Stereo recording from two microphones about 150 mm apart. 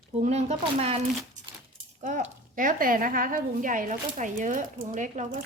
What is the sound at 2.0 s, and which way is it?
A woman's voice, 55° right (ahead or behind).